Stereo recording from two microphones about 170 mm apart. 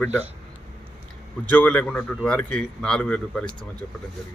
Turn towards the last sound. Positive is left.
turn(degrees=5)  # may be behind; listen again after turning